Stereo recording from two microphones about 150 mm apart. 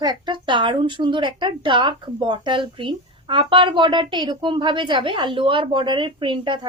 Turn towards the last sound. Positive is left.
turn(degrees=-30)  # may be behind; listen again after turning